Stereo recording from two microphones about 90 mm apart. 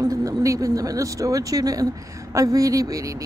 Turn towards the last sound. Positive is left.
turn(degrees=-40)  # may be behind; listen again after turning